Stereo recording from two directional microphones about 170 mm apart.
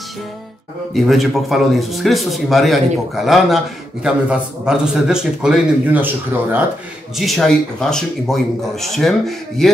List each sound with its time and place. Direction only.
0.9 s speech: centre (ahead or behind)
7.2 s speech: centre (ahead or behind)